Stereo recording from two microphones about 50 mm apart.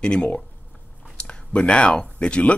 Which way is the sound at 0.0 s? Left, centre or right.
Centre.